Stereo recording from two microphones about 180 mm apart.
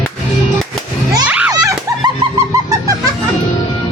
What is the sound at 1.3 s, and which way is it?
Children playing, 5° right (ahead or behind).